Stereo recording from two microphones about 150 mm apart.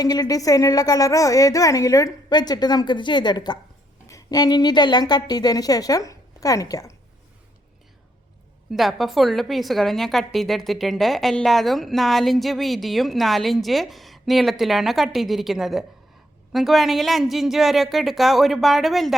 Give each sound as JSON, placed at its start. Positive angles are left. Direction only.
{"t": 0.0, "sound": "a woman's voice", "side_deg": 25}
{"t": 8.7, "sound": "a woman's voice", "side_deg": 0}